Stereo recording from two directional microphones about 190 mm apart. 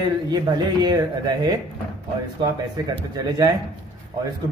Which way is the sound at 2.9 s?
20° right (ahead or behind).